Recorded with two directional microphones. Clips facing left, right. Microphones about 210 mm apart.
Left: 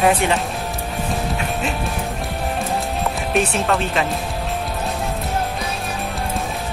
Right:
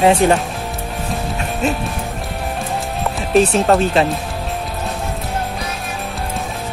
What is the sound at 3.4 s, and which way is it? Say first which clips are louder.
Speech: right 7 dB; 35° right (ahead or behind).